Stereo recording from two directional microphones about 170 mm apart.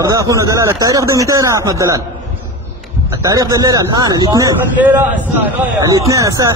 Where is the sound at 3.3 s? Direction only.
20° right (ahead or behind).